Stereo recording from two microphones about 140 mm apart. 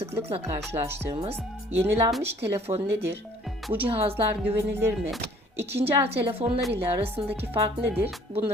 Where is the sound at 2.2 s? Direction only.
45° right (ahead or behind).